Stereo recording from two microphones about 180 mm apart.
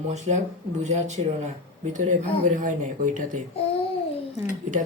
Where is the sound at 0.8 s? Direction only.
40° right (ahead or behind).